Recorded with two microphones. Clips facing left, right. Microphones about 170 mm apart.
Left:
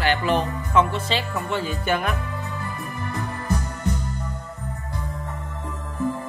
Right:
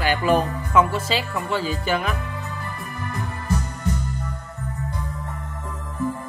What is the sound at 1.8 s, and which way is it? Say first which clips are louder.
Speech: left 2 dB; centre (ahead or behind).